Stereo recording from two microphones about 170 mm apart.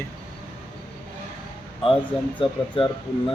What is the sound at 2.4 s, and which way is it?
Speech, 30° left (ahead or behind).